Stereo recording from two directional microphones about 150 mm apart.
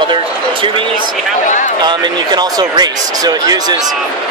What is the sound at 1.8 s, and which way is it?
Speech, 30° right (ahead or behind).